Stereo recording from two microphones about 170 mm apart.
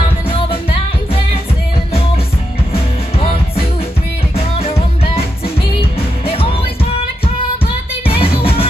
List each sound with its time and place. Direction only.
2.7 s music: 35° left (ahead or behind)
8.1 s music: 35° left (ahead or behind)